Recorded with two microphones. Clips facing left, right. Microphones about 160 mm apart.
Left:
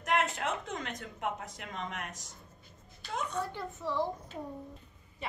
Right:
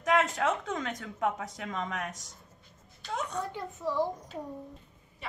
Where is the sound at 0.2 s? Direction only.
90° right.